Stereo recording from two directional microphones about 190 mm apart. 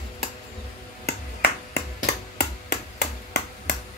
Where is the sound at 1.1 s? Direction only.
55° left (ahead or behind).